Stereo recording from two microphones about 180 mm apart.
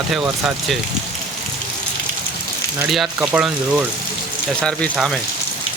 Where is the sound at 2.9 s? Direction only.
5° right (ahead or behind).